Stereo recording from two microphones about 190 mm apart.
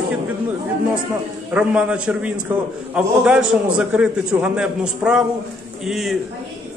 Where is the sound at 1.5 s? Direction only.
5° right (ahead or behind).